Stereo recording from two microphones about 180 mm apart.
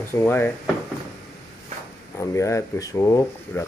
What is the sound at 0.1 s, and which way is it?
Speech, 15° left (ahead or behind).